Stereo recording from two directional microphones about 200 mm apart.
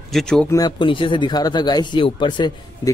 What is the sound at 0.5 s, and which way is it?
Speech, 20° left (ahead or behind).